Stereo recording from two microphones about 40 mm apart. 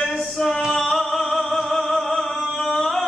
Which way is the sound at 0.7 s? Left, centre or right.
Centre.